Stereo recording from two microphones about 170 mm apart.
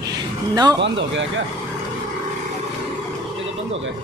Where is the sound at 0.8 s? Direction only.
90° right.